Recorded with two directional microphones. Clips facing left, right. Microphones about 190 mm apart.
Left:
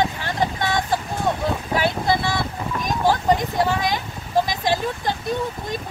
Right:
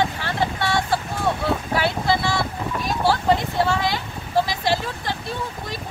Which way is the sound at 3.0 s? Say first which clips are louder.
Left 1 dB; 15° left (ahead or behind).